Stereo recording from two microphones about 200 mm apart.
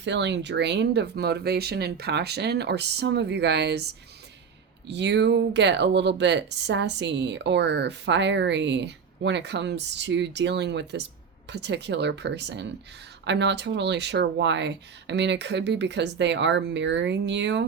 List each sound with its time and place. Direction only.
0.0 s speech: 60° right (ahead or behind)
4.9 s speech: 60° right (ahead or behind)